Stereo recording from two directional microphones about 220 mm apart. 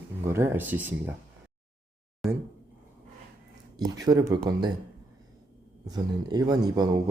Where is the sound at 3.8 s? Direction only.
15° right (ahead or behind).